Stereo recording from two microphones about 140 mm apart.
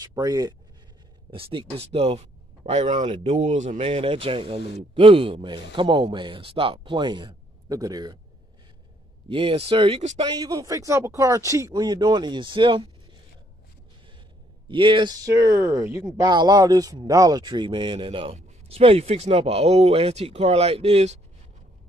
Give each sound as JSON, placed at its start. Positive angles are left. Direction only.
{"t": 0.0, "sound": "speech", "side_deg": -25}
{"t": 1.3, "sound": "speech", "side_deg": -40}
{"t": 9.3, "sound": "speech", "side_deg": -40}
{"t": 10.2, "sound": "speech", "side_deg": -30}
{"t": 14.7, "sound": "speech", "side_deg": -35}
{"t": 15.2, "sound": "speech", "side_deg": -20}